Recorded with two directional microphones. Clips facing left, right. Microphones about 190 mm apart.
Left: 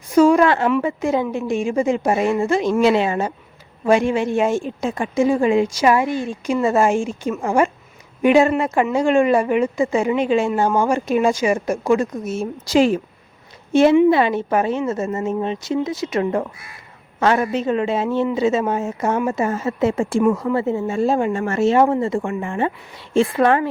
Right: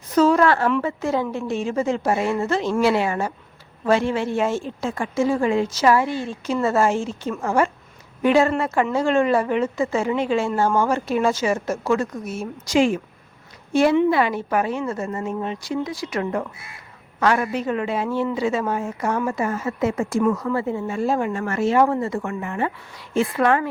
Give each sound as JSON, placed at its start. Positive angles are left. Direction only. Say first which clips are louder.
{"t": 0.1, "sound": "a sound", "louder": "left 3 dB", "side_deg": 10}
{"t": 0.8, "sound": "speech", "louder": "left 3 dB", "side_deg": 15}
{"t": 14.1, "sound": "a woman's voice", "louder": "left 4 dB", "side_deg": 25}